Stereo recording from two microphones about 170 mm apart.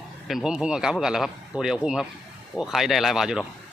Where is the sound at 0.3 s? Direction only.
Centre (ahead or behind).